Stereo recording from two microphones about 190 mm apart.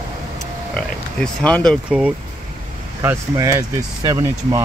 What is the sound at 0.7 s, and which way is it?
Speech, 5° left (ahead or behind).